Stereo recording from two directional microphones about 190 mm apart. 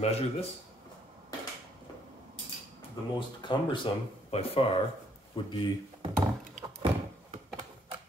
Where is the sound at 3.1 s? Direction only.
25° left (ahead or behind).